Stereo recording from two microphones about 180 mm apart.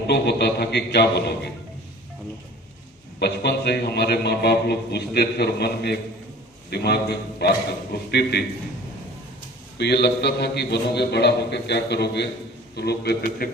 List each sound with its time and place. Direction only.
0.1 s a man's voice: 65° left (ahead or behind)
3.2 s a man's voice: 65° left (ahead or behind)
9.7 s a man's voice: 65° left (ahead or behind)